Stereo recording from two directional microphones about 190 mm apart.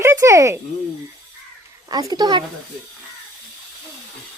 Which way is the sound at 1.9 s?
20° right (ahead or behind).